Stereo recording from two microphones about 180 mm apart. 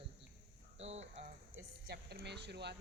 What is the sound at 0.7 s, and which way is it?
Speech, 35° right (ahead or behind).